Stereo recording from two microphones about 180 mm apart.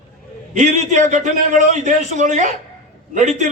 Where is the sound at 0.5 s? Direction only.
45° right (ahead or behind).